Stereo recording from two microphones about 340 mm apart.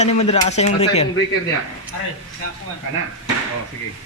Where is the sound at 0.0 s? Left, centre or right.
Centre.